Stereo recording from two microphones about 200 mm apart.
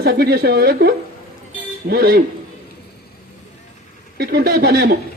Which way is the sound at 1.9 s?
45° right (ahead or behind).